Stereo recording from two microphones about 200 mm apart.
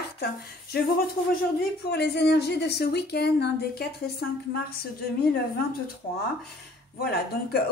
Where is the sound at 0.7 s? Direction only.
50° left (ahead or behind).